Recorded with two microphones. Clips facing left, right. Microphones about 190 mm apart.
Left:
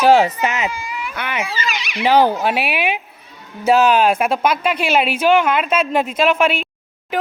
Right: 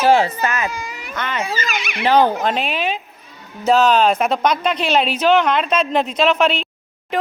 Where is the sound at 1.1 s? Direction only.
10° left (ahead or behind).